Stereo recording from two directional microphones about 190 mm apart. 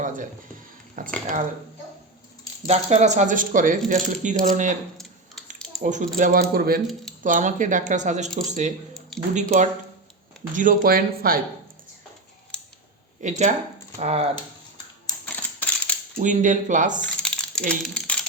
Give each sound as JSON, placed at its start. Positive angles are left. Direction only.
{"t": 0.9, "sound": "speech", "side_deg": -40}
{"t": 2.6, "sound": "speech", "side_deg": -35}
{"t": 5.8, "sound": "speech", "side_deg": -40}
{"t": 13.2, "sound": "speech", "side_deg": -40}
{"t": 15.3, "sound": "typewriter", "side_deg": 10}
{"t": 16.1, "sound": "speech", "side_deg": -40}
{"t": 17.2, "sound": "a sound", "side_deg": 5}
{"t": 17.7, "sound": "speech", "side_deg": 5}